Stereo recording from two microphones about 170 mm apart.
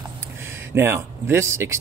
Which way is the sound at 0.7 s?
15° right (ahead or behind).